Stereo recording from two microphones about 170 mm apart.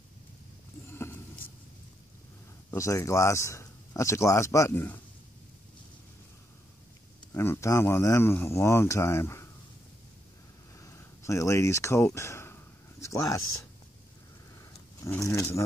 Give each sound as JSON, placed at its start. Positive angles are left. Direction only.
{"t": 0.9, "sound": "a sound", "side_deg": 15}
{"t": 2.7, "sound": "speech", "side_deg": 15}
{"t": 7.3, "sound": "speech", "side_deg": 15}
{"t": 10.8, "sound": "speech", "side_deg": 15}
{"t": 15.0, "sound": "speech", "side_deg": 15}